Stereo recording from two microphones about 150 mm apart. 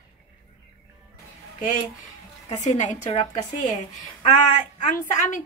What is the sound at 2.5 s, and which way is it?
Speech, 50° left (ahead or behind).